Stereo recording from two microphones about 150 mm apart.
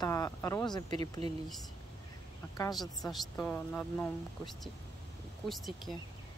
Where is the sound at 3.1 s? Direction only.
10° left (ahead or behind).